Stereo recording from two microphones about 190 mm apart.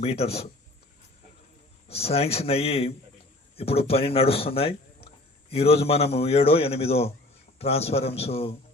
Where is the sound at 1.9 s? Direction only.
30° left (ahead or behind).